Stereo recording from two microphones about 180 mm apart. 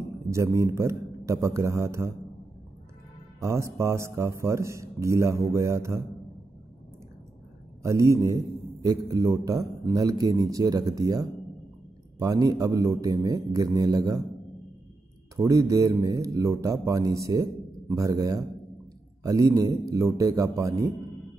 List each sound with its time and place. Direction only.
0.3 s a man's voice: 15° right (ahead or behind)
3.3 s a man's voice: 15° right (ahead or behind)
7.8 s a man's voice: 15° right (ahead or behind)
15.3 s a man's voice: 20° right (ahead or behind)